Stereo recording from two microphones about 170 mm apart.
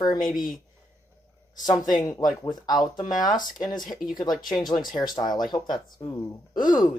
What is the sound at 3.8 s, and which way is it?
Speech, centre (ahead or behind).